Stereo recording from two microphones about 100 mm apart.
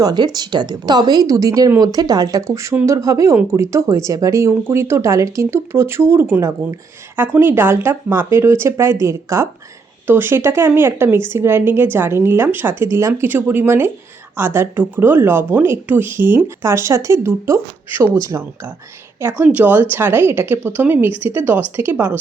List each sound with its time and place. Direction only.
0.0 s speech: 45° right (ahead or behind)
19.3 s speech: 15° right (ahead or behind)